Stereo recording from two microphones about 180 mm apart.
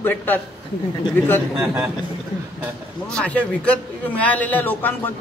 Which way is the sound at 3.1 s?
10° left (ahead or behind).